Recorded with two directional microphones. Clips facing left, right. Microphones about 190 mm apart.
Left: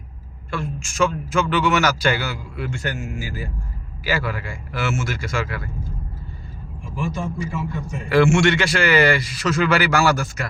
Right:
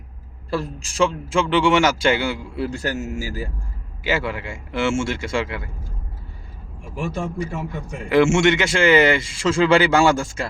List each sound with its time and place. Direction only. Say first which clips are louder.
0.5 s a man's voice: right 3 dB; 35° right (ahead or behind)
4.0 s a man's voice: right 1 dB; 25° right (ahead or behind)
7.0 s a man's voice: right 1 dB; 60° right (ahead or behind)
8.1 s a man's voice: right 1 dB; 20° right (ahead or behind)